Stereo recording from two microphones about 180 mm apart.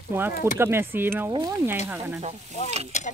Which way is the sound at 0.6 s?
15° right (ahead or behind).